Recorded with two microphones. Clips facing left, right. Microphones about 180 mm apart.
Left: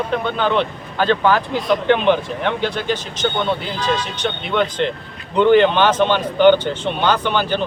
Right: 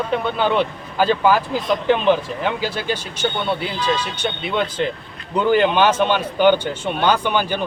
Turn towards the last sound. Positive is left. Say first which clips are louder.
# left 1 dB
turn(degrees=-10)  # may be behind; listen again after turning